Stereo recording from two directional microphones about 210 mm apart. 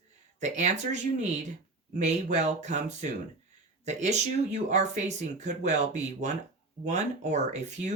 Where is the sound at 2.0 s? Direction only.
35° right (ahead or behind).